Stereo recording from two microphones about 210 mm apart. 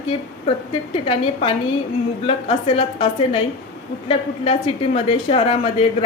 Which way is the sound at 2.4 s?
25° left (ahead or behind).